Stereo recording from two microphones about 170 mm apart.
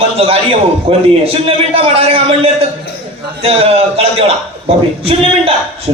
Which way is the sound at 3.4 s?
35° right (ahead or behind).